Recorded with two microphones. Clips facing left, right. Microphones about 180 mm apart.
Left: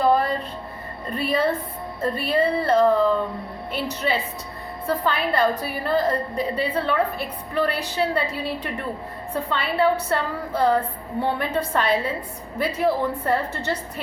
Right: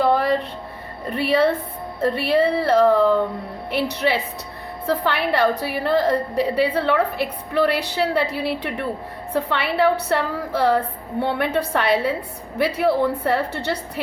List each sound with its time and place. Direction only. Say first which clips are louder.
0.0 s music: right 2 dB; 75° right (ahead or behind)
1.1 s a woman's voice: right 4 dB; 80° right